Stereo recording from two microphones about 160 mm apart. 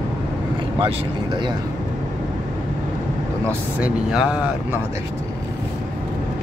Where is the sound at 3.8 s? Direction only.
10° right (ahead or behind).